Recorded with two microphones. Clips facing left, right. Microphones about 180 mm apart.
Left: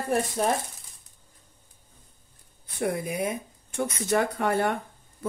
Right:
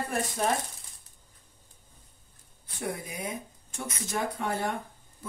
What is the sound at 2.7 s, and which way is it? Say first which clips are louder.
Speech: left 7 dB; 60° left (ahead or behind).